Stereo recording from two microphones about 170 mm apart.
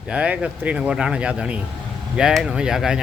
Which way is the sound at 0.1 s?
5° right (ahead or behind).